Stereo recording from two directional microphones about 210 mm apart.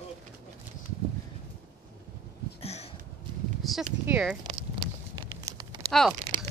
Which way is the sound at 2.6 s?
30° left (ahead or behind).